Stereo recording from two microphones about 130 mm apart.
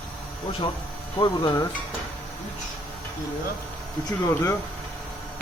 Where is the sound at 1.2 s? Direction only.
30° left (ahead or behind).